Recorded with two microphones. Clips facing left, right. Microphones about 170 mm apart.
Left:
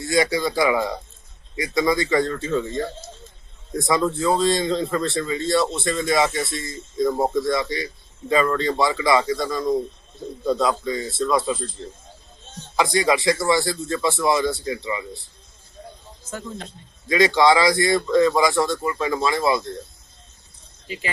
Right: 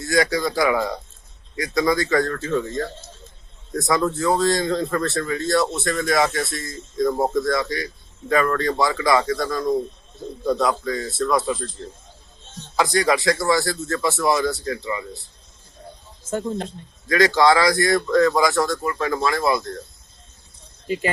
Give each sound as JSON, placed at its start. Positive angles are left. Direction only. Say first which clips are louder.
{"t": 0.0, "sound": "speech", "louder": "even", "side_deg": 25}
{"t": 3.9, "sound": "a man's voice", "louder": "even", "side_deg": 20}
{"t": 7.0, "sound": "speech", "louder": "even", "side_deg": 0}
{"t": 7.4, "sound": "speech", "louder": "even", "side_deg": 25}
{"t": 9.2, "sound": "a man's voice", "louder": "even", "side_deg": 10}
{"t": 10.4, "sound": "a man's voice", "louder": "even", "side_deg": 25}
{"t": 16.3, "sound": "speech", "louder": "right 8 dB", "side_deg": -45}
{"t": 17.1, "sound": "speech", "louder": "even", "side_deg": 25}
{"t": 18.9, "sound": "speech", "louder": "even", "side_deg": 15}
{"t": 20.8, "sound": "speech", "louder": "right 8 dB", "side_deg": -50}